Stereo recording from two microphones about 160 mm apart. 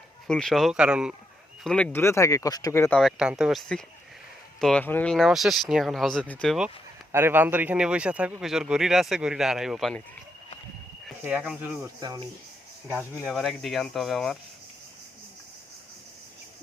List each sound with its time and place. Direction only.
0.3 s speech: 5° left (ahead or behind)
1.6 s speech: 5° left (ahead or behind)
3.0 s speech: 5° right (ahead or behind)
5.1 s speech: centre (ahead or behind)
7.1 s speech: 15° right (ahead or behind)
11.2 s speech: 10° right (ahead or behind)
11.9 s speech: 25° right (ahead or behind)
12.9 s speech: 10° right (ahead or behind)
13.2 s speech: centre (ahead or behind)